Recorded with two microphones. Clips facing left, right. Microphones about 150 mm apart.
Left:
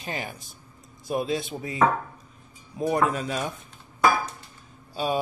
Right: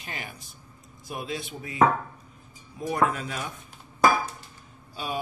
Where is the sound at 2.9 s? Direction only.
25° left (ahead or behind).